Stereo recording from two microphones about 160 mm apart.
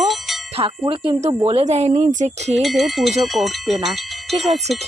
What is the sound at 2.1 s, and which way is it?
Speech, 45° right (ahead or behind).